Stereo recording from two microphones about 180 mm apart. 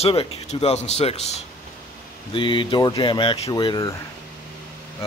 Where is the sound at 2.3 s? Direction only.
25° left (ahead or behind).